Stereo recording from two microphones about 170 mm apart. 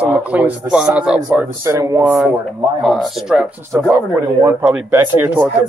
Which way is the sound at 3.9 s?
20° right (ahead or behind).